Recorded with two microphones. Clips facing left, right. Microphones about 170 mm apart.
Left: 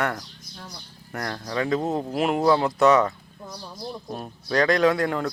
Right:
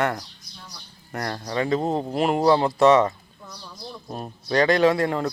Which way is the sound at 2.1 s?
Centre (ahead or behind).